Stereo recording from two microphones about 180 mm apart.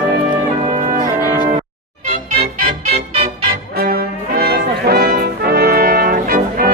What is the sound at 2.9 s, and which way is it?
Music, 35° right (ahead or behind).